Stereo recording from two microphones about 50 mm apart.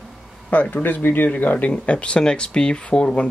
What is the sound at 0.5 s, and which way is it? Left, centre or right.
Speech, left.